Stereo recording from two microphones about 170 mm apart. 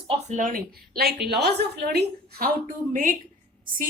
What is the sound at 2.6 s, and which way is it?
Speech, 50° right (ahead or behind).